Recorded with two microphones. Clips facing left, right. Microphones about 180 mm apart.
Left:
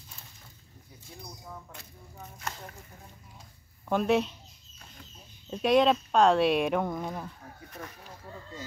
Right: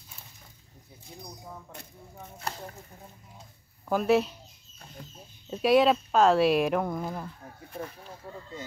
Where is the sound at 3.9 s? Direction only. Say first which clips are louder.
Right 2 dB; 5° right (ahead or behind).